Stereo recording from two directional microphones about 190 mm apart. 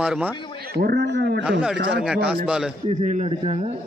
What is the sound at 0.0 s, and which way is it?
Speech, 5° right (ahead or behind).